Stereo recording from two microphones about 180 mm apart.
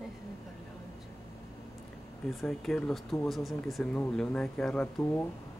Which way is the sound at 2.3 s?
Centre (ahead or behind).